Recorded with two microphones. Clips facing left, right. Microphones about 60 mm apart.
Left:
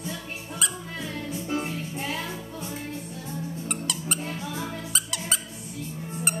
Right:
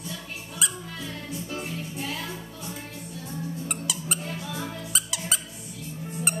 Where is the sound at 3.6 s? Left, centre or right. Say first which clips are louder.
Left 1 dB; centre.